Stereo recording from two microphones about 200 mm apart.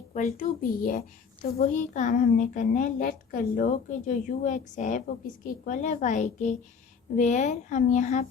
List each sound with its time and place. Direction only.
0.1 s a child's voice: 40° left (ahead or behind)